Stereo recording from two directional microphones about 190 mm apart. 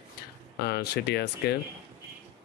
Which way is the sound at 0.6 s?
60° left (ahead or behind).